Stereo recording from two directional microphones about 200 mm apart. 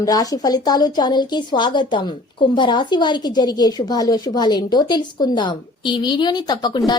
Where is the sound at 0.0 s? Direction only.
20° left (ahead or behind).